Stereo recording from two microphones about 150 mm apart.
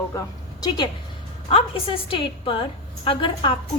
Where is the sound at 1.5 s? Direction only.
35° left (ahead or behind).